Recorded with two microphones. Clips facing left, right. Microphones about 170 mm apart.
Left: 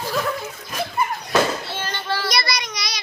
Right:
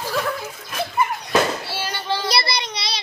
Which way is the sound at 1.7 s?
10° right (ahead or behind).